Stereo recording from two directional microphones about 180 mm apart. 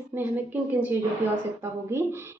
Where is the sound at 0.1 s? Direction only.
10° right (ahead or behind).